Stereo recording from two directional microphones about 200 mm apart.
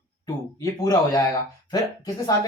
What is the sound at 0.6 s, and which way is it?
Speech, 20° left (ahead or behind).